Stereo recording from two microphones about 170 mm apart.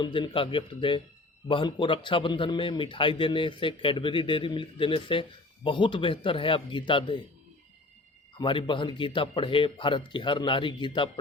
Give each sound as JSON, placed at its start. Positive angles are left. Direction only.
{"t": 0.0, "sound": "a man's voice", "side_deg": 30}
{"t": 8.4, "sound": "a man's voice", "side_deg": 30}